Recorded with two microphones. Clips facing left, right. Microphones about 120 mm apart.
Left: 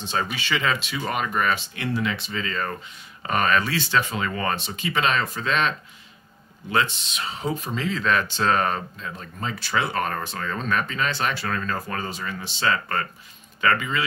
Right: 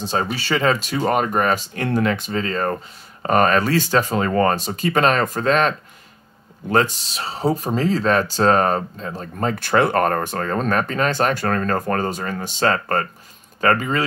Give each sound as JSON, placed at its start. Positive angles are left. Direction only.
{"t": 0.0, "sound": "speech", "side_deg": -40}